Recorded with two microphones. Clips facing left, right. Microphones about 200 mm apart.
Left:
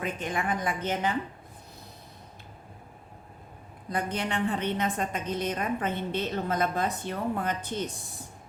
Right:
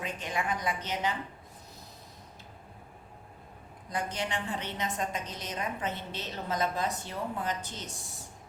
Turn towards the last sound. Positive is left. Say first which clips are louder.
# left 5 dB
turn(degrees=55)  # may be behind; listen again after turning